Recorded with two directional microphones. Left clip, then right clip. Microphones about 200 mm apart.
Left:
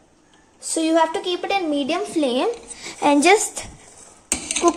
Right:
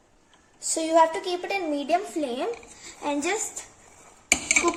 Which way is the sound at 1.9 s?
45° left (ahead or behind).